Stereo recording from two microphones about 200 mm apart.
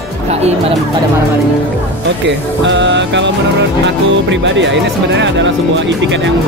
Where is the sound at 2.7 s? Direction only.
65° right (ahead or behind).